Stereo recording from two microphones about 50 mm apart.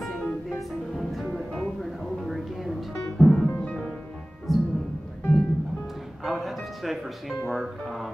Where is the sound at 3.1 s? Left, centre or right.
Centre.